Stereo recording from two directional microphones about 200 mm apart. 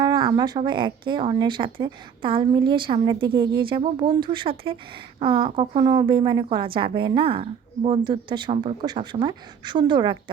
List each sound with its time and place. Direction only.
0.0 s a woman's voice: 20° right (ahead or behind)